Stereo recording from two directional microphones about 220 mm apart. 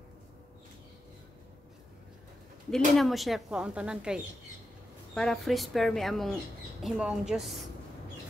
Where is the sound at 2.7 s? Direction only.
Centre (ahead or behind).